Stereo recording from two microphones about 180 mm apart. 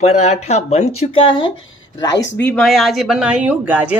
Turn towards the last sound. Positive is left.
turn(degrees=-10)  # may be behind; listen again after turning